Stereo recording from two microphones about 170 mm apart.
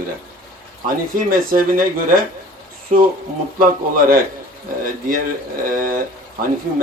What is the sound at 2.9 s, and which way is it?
Speech, 50° right (ahead or behind).